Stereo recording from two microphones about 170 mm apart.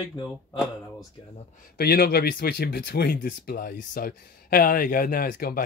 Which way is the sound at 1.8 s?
65° left (ahead or behind).